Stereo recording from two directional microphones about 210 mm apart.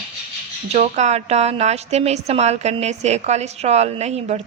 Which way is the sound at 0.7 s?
35° right (ahead or behind).